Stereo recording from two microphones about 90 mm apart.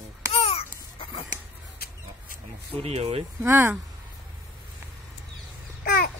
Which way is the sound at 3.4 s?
25° right (ahead or behind).